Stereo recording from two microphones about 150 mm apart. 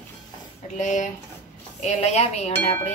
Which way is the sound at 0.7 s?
55° left (ahead or behind).